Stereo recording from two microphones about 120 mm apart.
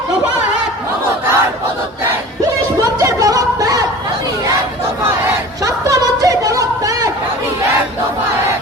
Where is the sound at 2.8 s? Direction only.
30° right (ahead or behind).